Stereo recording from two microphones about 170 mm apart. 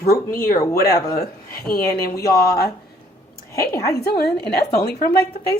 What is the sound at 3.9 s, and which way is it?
A woman's voice, 65° left (ahead or behind).